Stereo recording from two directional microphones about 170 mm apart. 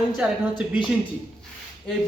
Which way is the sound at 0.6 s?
30° left (ahead or behind).